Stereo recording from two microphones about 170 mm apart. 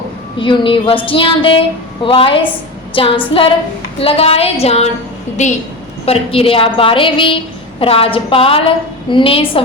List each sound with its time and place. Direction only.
0.3 s a woman's voice: 30° left (ahead or behind)
6.1 s a woman's voice: 35° left (ahead or behind)